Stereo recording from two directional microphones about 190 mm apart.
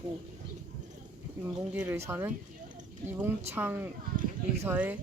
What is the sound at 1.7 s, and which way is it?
Speech, 10° right (ahead or behind).